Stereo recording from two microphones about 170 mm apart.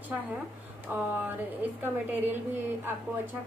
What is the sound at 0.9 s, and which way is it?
A woman's voice, 10° right (ahead or behind).